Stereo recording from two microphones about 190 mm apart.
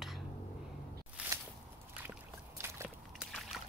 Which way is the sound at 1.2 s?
5° right (ahead or behind).